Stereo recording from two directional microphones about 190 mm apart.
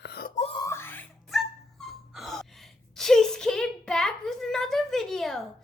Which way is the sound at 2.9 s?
Centre (ahead or behind).